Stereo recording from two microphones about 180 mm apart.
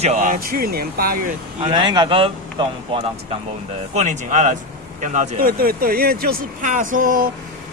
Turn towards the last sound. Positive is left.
turn(degrees=-50)  # may be behind; listen again after turning